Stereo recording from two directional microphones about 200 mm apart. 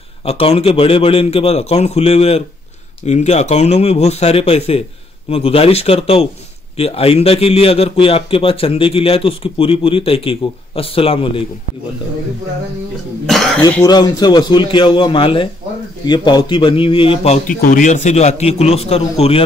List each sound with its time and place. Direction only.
0.2 s a man's voice: 30° left (ahead or behind)
13.3 s speech: centre (ahead or behind)
13.8 s a man's voice: 20° left (ahead or behind)